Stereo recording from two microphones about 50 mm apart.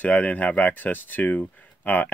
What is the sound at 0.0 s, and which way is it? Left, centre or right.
Speech, left.